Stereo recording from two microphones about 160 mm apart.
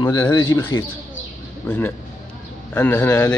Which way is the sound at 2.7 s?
10° left (ahead or behind).